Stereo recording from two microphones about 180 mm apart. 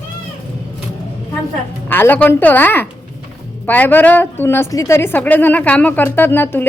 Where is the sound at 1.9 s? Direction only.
10° left (ahead or behind).